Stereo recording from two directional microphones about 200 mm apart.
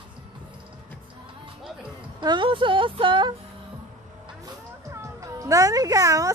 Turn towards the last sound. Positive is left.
turn(degrees=-15)  # may be behind; listen again after turning